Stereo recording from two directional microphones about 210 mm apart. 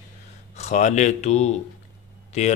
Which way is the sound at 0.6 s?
35° left (ahead or behind).